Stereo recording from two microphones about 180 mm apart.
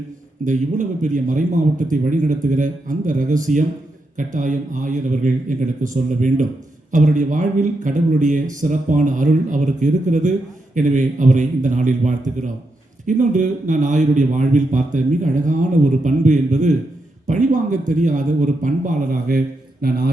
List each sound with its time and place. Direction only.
0.4 s a man's voice: 45° right (ahead or behind)
19.8 s a man's voice: 55° right (ahead or behind)